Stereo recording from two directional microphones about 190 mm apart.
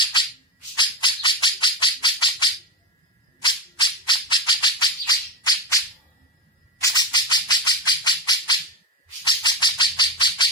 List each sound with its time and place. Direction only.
0.8 s bird: 25° left (ahead or behind)
6.8 s bird: 20° left (ahead or behind)